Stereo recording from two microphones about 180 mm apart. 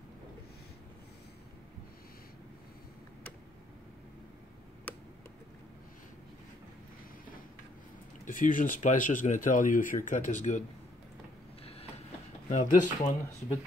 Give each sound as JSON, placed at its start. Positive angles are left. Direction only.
{"t": 8.3, "sound": "speech", "side_deg": 50}
{"t": 12.4, "sound": "speech", "side_deg": 45}